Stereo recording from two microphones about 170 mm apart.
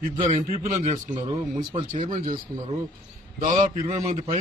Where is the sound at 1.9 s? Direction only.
45° right (ahead or behind).